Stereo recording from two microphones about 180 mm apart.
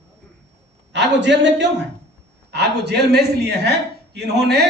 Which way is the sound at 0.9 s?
75° right (ahead or behind).